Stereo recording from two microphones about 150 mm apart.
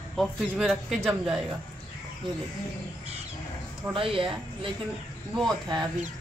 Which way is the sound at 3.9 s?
35° right (ahead or behind).